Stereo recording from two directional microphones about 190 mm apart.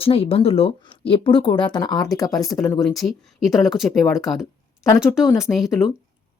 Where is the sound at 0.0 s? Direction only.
30° left (ahead or behind).